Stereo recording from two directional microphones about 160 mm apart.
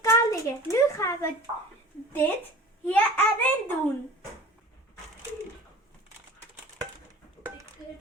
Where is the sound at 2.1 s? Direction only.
10° left (ahead or behind).